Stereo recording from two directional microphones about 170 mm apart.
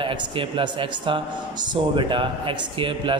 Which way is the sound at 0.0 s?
30° right (ahead or behind).